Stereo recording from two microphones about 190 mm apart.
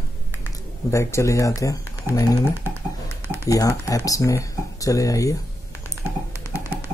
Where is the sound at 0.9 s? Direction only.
15° left (ahead or behind).